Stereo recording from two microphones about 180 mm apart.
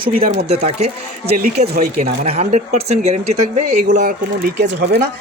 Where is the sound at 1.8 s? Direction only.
50° right (ahead or behind).